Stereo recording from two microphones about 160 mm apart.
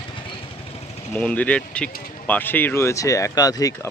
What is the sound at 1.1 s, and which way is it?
Speech, 10° left (ahead or behind).